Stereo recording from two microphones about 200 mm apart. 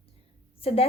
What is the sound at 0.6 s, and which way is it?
Speech, 30° left (ahead or behind).